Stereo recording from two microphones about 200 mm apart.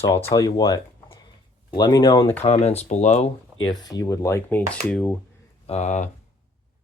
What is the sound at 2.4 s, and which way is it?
Speech, 30° left (ahead or behind).